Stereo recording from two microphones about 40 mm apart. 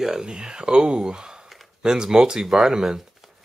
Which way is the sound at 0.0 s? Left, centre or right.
Centre.